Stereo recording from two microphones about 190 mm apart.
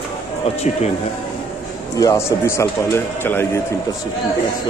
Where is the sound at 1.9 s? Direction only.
15° left (ahead or behind).